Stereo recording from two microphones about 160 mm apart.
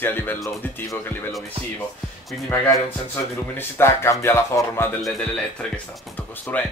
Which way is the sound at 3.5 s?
15° left (ahead or behind).